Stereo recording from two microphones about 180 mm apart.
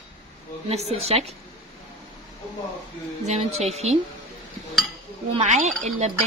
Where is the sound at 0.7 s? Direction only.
35° right (ahead or behind).